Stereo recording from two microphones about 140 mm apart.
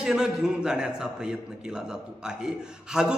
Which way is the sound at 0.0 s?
5° right (ahead or behind).